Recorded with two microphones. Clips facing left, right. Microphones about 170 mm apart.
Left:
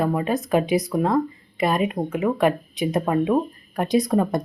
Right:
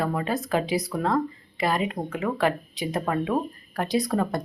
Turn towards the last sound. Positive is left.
turn(degrees=20)  # may be behind; listen again after turning